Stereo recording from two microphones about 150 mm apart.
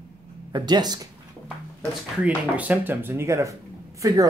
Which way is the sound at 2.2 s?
10° right (ahead or behind).